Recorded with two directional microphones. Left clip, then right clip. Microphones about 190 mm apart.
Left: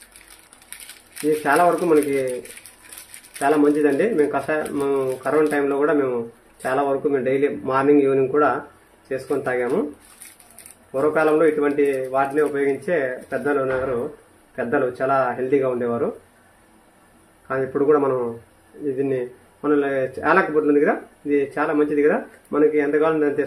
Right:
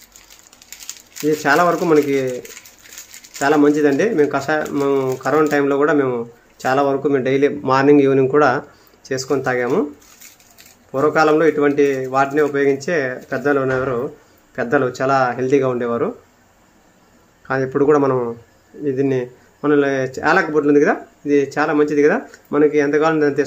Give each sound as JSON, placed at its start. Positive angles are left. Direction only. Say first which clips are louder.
{"t": 1.4, "sound": "speech", "louder": "right 2 dB", "side_deg": -30}
{"t": 3.3, "sound": "speech", "louder": "right 3 dB", "side_deg": -30}
{"t": 10.9, "sound": "speech", "louder": "right 4 dB", "side_deg": -35}
{"t": 17.5, "sound": "speech", "louder": "right 3 dB", "side_deg": -30}
{"t": 19.6, "sound": "speech", "louder": "right 4 dB", "side_deg": -35}